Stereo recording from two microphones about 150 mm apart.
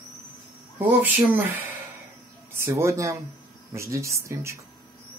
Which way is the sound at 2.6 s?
20° right (ahead or behind).